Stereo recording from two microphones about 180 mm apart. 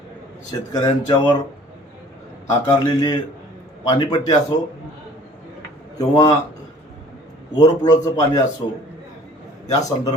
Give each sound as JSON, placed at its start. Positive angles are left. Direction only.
{"t": 0.7, "sound": "a man's voice", "side_deg": 25}
{"t": 2.5, "sound": "a man's voice", "side_deg": 20}
{"t": 6.0, "sound": "a man's voice", "side_deg": 20}
{"t": 7.5, "sound": "a man's voice", "side_deg": 20}
{"t": 8.6, "sound": "a man's voice", "side_deg": 35}
{"t": 9.7, "sound": "a man's voice", "side_deg": 20}